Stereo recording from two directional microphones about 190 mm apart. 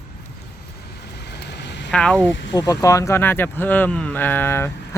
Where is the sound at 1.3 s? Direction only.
65° left (ahead or behind).